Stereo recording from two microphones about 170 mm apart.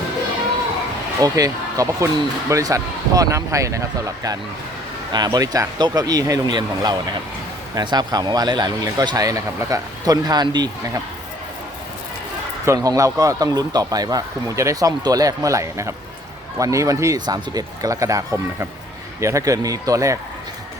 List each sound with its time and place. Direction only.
1.2 s speech: 20° right (ahead or behind)
12.6 s speech: 20° right (ahead or behind)